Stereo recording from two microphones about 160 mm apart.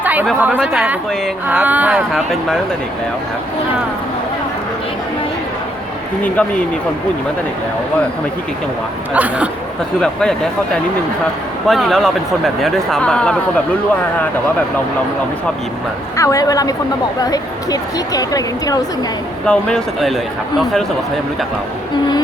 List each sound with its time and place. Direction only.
0.0 s chatter: 10° right (ahead or behind)
0.3 s a woman's voice: 10° right (ahead or behind)
9.1 s a woman's voice: 10° right (ahead or behind)
10.0 s speech: 5° left (ahead or behind)
11.7 s speech: centre (ahead or behind)
16.1 s speech: 20° left (ahead or behind)
19.5 s speech: 5° left (ahead or behind)